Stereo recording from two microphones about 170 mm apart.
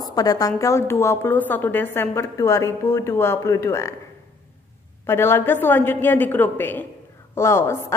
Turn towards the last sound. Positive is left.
turn(degrees=15)  # may be behind; listen again after turning